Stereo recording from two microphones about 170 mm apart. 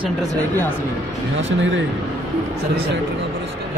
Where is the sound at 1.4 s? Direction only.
90° right.